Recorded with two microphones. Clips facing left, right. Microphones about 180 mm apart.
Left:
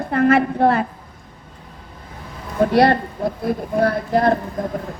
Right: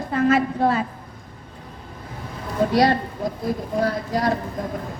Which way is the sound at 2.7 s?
60° left (ahead or behind).